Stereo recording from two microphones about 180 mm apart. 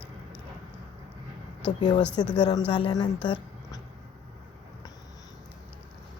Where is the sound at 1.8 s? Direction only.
25° left (ahead or behind).